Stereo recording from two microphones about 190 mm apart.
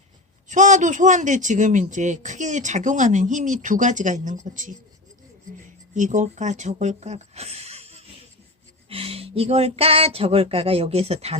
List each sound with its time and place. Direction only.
0.4 s speech: 40° right (ahead or behind)
5.9 s speech: 40° right (ahead or behind)